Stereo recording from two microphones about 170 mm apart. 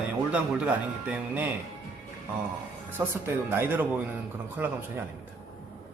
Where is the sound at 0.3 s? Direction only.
5° right (ahead or behind).